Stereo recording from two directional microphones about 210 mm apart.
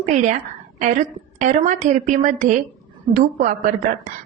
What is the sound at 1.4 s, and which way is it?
A woman's voice, 35° right (ahead or behind).